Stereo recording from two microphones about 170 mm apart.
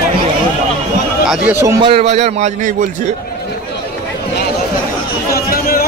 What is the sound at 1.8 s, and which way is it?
Speech, 35° right (ahead or behind).